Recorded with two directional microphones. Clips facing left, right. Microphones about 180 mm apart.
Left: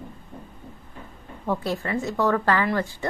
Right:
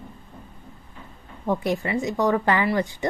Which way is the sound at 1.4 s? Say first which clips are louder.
Right 2 dB; 15° right (ahead or behind).